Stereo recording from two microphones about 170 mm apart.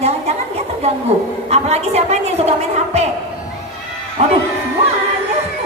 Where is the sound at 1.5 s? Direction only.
40° right (ahead or behind).